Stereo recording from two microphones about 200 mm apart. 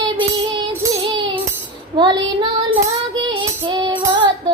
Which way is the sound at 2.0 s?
20° right (ahead or behind).